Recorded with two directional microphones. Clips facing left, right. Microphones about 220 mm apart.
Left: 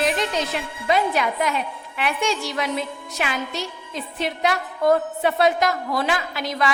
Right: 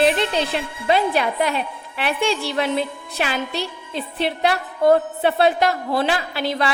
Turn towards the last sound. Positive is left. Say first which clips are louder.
# right 2 dB
turn(degrees=-30)  # may be behind; listen again after turning